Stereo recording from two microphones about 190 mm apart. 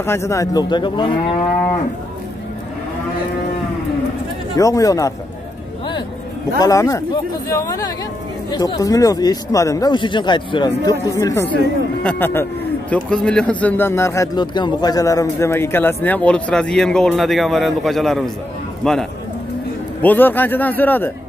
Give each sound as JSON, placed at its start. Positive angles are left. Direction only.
{"t": 0.0, "sound": "speech", "side_deg": 15}
{"t": 4.6, "sound": "speech", "side_deg": 15}
{"t": 6.6, "sound": "speech", "side_deg": 15}